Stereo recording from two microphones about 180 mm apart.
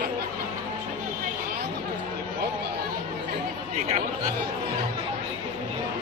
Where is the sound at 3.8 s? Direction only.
40° right (ahead or behind).